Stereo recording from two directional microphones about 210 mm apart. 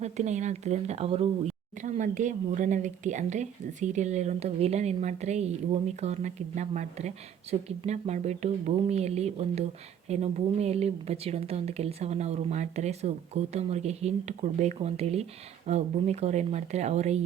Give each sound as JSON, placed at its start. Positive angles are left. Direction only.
{"t": 0.0, "sound": "speech", "side_deg": -35}